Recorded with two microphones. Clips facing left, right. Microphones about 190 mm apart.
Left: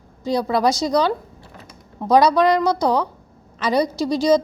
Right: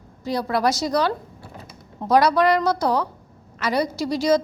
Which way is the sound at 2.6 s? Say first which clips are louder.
Left 2 dB; 15° left (ahead or behind).